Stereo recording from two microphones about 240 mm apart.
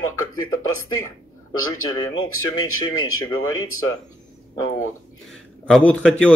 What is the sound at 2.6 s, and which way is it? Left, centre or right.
Speech, left.